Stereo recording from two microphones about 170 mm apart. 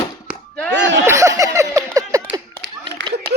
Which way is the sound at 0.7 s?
90° right.